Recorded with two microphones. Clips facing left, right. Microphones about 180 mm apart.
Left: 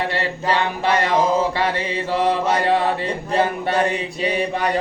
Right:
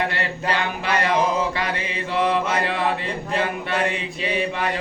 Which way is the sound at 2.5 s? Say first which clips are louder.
Left 4 dB; 40° left (ahead or behind).